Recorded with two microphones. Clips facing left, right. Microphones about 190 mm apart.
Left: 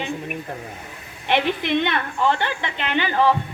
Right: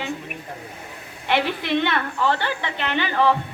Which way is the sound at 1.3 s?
20° left (ahead or behind).